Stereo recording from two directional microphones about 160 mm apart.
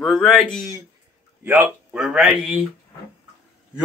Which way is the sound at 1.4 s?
10° right (ahead or behind).